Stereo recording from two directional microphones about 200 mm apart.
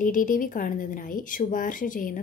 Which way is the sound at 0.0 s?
40° left (ahead or behind).